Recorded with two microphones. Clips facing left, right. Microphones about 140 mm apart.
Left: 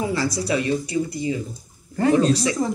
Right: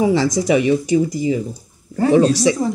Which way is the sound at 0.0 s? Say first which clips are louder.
Right 8 dB; 90° right.